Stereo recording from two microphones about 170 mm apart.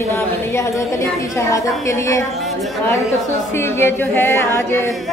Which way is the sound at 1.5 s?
15° left (ahead or behind).